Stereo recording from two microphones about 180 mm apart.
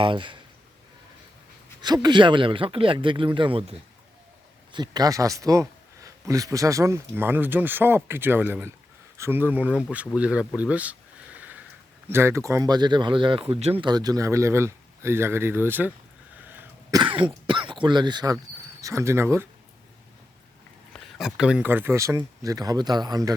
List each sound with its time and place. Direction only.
0.0 s speech: 25° right (ahead or behind)
1.8 s speech: 25° right (ahead or behind); by 10.9 s 10° right (ahead or behind)
11.3 s a sound: 10° right (ahead or behind)
12.0 s speech: 15° right (ahead or behind)
16.5 s cough: 10° right (ahead or behind)
17.0 s throat clearing: 25° right (ahead or behind)
18.8 s speech: 15° right (ahead or behind)
20.9 s speech: centre (ahead or behind); by 23.3 s 20° right (ahead or behind)